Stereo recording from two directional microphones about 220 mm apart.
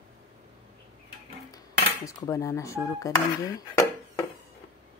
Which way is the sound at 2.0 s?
15° left (ahead or behind).